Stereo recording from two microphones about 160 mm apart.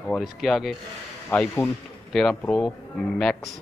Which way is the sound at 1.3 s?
10° left (ahead or behind).